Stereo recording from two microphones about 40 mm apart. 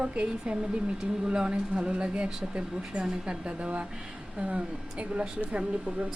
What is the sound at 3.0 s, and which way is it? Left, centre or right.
Speech, centre.